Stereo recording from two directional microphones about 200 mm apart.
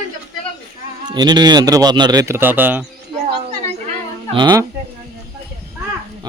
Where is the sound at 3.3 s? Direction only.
25° right (ahead or behind).